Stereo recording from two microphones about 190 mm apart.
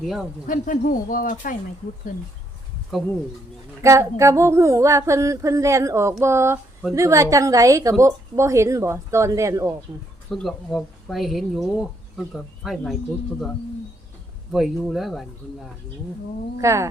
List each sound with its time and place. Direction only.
0.0 s speech: centre (ahead or behind)
0.4 s speech: 45° left (ahead or behind)
3.8 s a woman's voice: 15° right (ahead or behind)
10.2 s speech: 5° left (ahead or behind)
14.5 s speech: centre (ahead or behind)
16.6 s a woman's voice: 15° right (ahead or behind)